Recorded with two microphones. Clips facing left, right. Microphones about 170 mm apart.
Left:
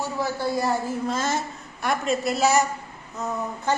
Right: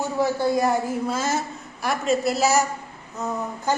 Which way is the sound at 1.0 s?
5° right (ahead or behind).